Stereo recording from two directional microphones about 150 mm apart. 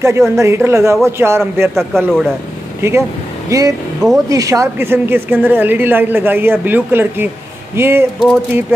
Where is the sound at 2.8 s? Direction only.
20° right (ahead or behind).